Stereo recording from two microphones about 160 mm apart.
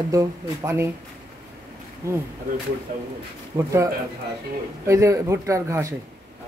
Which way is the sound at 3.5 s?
20° right (ahead or behind).